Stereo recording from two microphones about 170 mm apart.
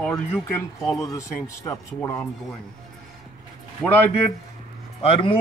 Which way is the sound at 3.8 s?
10° left (ahead or behind).